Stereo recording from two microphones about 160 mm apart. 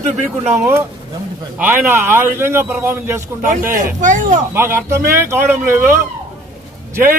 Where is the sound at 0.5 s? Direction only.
15° right (ahead or behind).